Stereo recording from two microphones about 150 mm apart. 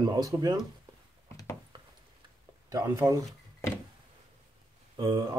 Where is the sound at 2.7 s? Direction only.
25° right (ahead or behind).